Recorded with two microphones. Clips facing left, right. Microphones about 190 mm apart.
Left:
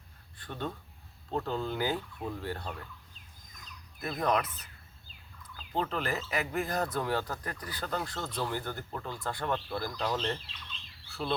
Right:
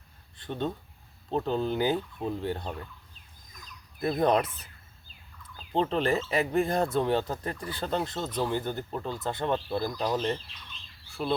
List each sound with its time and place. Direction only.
0.3 s a sound: 20° right (ahead or behind)
1.3 s speech: 20° right (ahead or behind)
4.0 s speech: 30° right (ahead or behind); by 11.3 s 15° right (ahead or behind)